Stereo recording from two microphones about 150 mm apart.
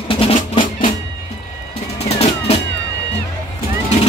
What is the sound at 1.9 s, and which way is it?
Music, 45° left (ahead or behind).